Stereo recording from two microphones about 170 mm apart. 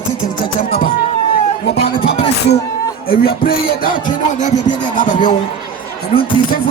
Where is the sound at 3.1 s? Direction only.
60° left (ahead or behind).